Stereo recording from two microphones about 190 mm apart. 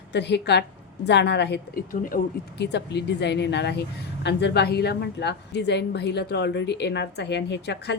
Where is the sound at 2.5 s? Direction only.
65° left (ahead or behind).